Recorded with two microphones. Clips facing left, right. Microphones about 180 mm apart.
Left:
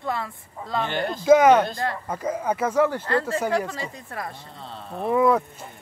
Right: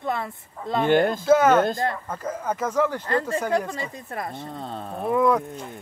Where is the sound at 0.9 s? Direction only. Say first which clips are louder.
Right 8 dB; 50° right (ahead or behind).